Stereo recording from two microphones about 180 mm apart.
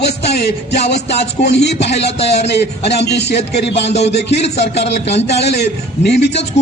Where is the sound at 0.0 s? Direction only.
65° left (ahead or behind).